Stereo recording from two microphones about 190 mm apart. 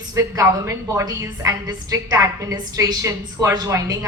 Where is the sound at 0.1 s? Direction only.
15° right (ahead or behind).